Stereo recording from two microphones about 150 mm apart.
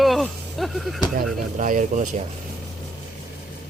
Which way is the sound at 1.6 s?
55° right (ahead or behind).